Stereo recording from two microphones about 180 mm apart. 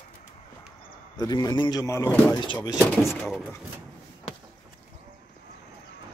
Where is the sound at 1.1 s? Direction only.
20° left (ahead or behind).